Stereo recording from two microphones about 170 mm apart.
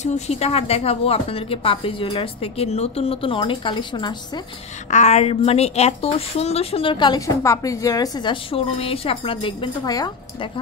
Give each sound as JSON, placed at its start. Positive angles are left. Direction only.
{"t": 0.0, "sound": "a woman's voice", "side_deg": 40}
{"t": 4.9, "sound": "a woman's voice", "side_deg": 40}